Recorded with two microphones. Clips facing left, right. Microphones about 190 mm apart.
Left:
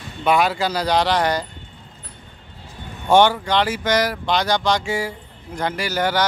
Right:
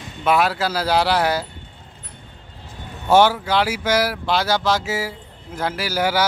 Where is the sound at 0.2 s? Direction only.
Centre (ahead or behind).